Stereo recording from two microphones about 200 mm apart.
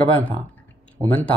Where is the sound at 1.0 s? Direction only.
20° right (ahead or behind).